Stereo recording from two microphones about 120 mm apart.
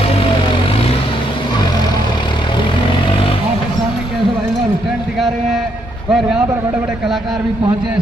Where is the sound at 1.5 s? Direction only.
35° left (ahead or behind).